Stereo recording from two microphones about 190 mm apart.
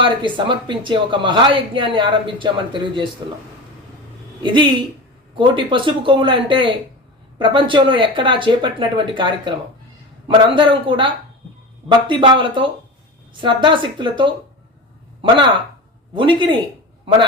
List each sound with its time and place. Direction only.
0.0 s speech: 25° right (ahead or behind)
4.4 s speech: 25° right (ahead or behind)